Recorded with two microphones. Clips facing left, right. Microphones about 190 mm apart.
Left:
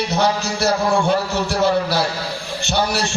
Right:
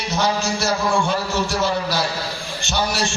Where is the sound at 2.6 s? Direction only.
60° left (ahead or behind).